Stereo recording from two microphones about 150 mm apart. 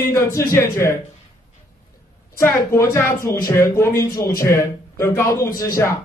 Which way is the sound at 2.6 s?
15° left (ahead or behind).